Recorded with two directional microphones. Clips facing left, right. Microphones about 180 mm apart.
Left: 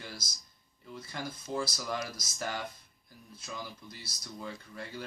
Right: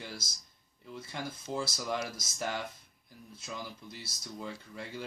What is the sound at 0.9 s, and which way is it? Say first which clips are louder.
Speech: even; 25° right (ahead or behind).